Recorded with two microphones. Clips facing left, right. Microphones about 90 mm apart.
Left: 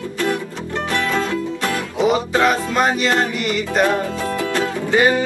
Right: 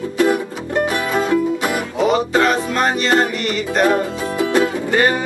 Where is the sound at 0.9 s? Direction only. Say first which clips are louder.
Even; 10° right (ahead or behind).